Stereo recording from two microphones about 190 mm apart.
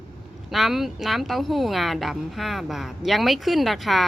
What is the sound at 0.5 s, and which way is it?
Speech, centre (ahead or behind).